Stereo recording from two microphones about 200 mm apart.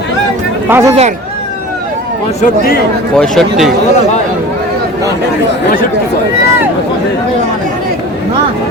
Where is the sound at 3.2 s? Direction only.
Centre (ahead or behind).